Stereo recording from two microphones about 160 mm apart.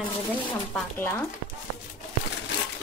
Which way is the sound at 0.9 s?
15° left (ahead or behind).